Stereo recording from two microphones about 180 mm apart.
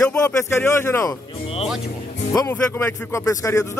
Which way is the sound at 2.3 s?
15° left (ahead or behind).